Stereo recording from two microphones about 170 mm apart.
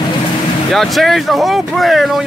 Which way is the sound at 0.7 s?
Centre (ahead or behind).